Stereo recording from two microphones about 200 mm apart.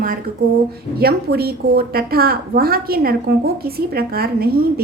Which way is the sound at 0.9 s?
50° right (ahead or behind).